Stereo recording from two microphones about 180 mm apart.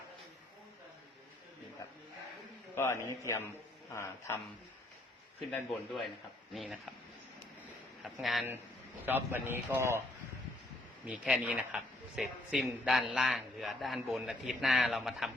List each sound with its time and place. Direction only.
2.7 s a man's voice: 15° left (ahead or behind)
5.4 s a man's voice: centre (ahead or behind)
8.0 s speech: centre (ahead or behind)
9.0 s a man's voice: 10° right (ahead or behind)
11.0 s a man's voice: 5° right (ahead or behind)